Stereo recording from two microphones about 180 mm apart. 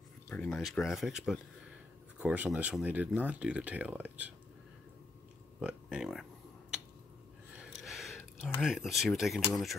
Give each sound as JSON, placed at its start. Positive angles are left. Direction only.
{"t": 0.3, "sound": "speech", "side_deg": 5}
{"t": 5.6, "sound": "speech", "side_deg": -5}
{"t": 7.5, "sound": "a sound", "side_deg": 0}
{"t": 9.5, "sound": "speech", "side_deg": 0}